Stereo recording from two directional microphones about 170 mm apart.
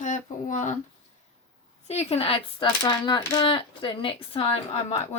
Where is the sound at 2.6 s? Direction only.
20° left (ahead or behind); by 5.0 s 35° left (ahead or behind).